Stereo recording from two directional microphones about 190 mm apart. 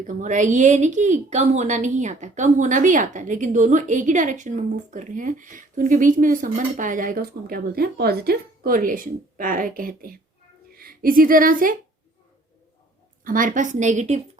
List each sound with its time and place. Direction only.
0.2 s a woman's voice: 40° right (ahead or behind)
13.2 s a woman's voice: 45° right (ahead or behind)